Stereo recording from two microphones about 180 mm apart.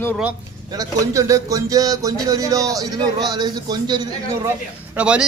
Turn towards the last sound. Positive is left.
turn(degrees=-5)  # may be behind; listen again after turning